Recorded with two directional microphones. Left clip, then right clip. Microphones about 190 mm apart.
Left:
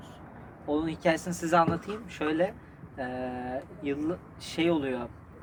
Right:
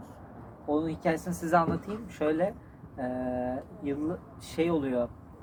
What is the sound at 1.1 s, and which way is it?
Speech, 25° left (ahead or behind).